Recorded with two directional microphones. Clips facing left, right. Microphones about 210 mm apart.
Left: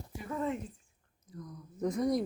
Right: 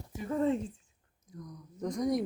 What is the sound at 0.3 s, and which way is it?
Speech, 30° right (ahead or behind).